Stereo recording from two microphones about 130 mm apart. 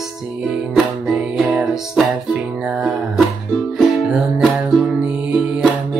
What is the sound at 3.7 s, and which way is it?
Music, centre (ahead or behind).